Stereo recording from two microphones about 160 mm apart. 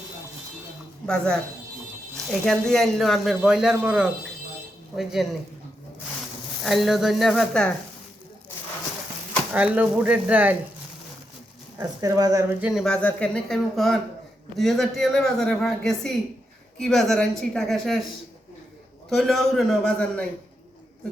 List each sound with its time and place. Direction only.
1.0 s speech: 5° left (ahead or behind)
2.4 s speech: 5° left (ahead or behind)
5.2 s speech: centre (ahead or behind)
6.6 s speech: centre (ahead or behind)
9.5 s speech: 10° right (ahead or behind)
11.8 s speech: 20° right (ahead or behind)
12.5 s speech: 5° right (ahead or behind)
19.1 s speech: centre (ahead or behind)